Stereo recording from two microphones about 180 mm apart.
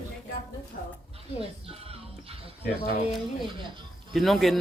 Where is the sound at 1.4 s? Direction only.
35° right (ahead or behind).